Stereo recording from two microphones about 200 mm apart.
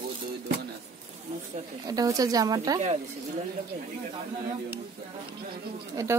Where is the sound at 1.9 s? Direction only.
20° right (ahead or behind).